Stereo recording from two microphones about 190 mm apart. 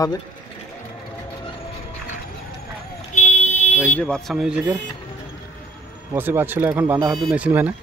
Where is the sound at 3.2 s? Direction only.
35° left (ahead or behind).